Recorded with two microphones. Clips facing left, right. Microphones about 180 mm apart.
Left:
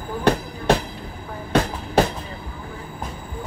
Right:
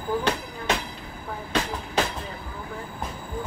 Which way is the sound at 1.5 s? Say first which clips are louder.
Left 7 dB; 50° left (ahead or behind).